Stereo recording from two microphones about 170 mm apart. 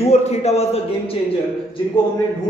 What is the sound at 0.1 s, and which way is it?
Speech, 40° left (ahead or behind).